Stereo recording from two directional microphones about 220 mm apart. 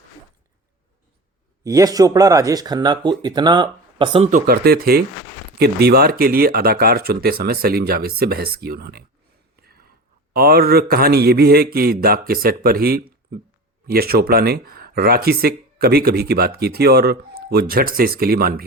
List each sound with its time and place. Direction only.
1.6 s speech: 15° right (ahead or behind)
4.3 s speech: 40° right (ahead or behind)
9.6 s a sound: 45° right (ahead or behind)
10.3 s speech: 45° right (ahead or behind)